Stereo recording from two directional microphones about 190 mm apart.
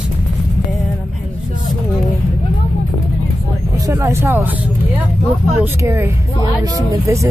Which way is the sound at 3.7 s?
20° right (ahead or behind).